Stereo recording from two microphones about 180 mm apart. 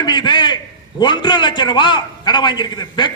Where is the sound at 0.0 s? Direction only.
25° left (ahead or behind).